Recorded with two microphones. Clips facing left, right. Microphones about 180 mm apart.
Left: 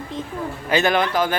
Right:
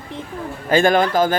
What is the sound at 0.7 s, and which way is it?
Speech, 45° right (ahead or behind).